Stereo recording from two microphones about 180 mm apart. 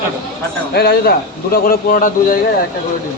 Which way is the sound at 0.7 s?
65° left (ahead or behind).